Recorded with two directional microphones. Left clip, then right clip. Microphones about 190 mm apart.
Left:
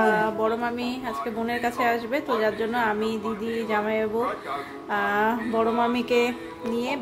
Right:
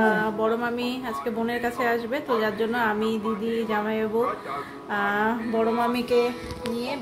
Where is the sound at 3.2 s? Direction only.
40° left (ahead or behind).